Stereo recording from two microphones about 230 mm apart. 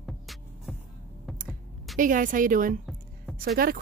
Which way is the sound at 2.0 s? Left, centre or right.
Right.